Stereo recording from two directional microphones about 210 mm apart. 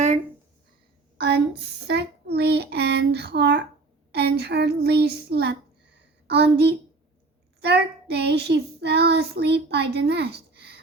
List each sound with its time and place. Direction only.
1.2 s a child's voice: 50° right (ahead or behind)
7.6 s a child's voice: 50° right (ahead or behind)